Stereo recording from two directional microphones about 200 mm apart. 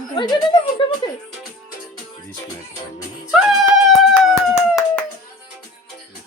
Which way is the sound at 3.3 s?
Centre (ahead or behind).